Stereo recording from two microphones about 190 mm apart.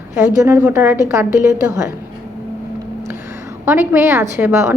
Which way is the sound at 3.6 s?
10° right (ahead or behind).